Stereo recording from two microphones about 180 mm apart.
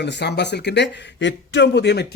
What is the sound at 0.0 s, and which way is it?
Speech, 70° left (ahead or behind).